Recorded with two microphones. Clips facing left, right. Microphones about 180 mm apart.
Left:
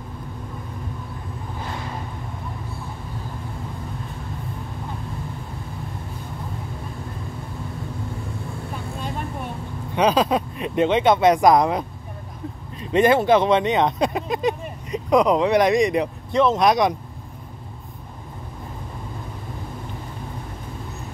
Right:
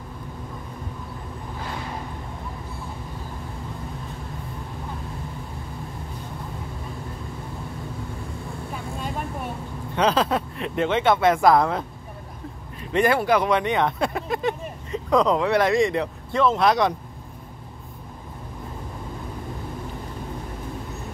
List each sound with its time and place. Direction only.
9.9 s speech: 15° left (ahead or behind)
12.9 s speech: 20° left (ahead or behind)